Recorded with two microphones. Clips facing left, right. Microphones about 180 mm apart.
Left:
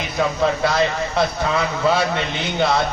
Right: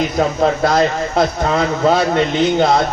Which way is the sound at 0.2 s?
45° right (ahead or behind).